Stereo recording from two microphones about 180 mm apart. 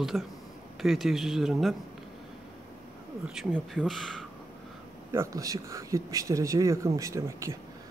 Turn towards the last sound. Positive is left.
turn(degrees=-15)  # may be behind; listen again after turning